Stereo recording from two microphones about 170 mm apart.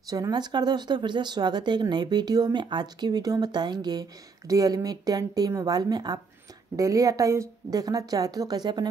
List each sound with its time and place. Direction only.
0.1 s speech: 25° right (ahead or behind)